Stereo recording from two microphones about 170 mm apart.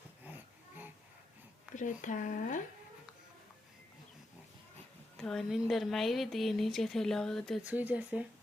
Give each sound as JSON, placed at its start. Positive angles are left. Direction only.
{"t": 0.3, "sound": "a sound", "side_deg": -10}
{"t": 1.7, "sound": "speech", "side_deg": 50}
{"t": 5.1, "sound": "speech", "side_deg": 5}
{"t": 7.6, "sound": "speech", "side_deg": -10}